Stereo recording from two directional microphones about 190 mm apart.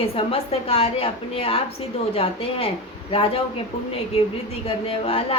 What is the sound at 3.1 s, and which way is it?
Speech, 30° left (ahead or behind).